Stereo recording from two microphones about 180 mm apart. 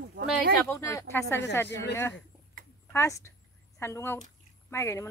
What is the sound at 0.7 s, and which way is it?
Speech, 15° left (ahead or behind).